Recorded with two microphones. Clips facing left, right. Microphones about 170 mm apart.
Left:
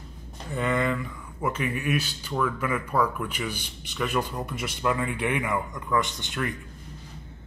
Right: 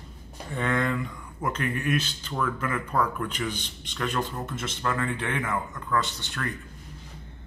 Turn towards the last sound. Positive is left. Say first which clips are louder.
# left 3 dB
turn(degrees=20)  # may be behind; listen again after turning